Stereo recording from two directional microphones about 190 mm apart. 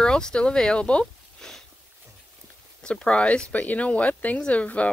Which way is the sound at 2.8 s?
5° left (ahead or behind).